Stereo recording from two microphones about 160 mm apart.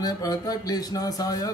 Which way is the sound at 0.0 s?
25° left (ahead or behind).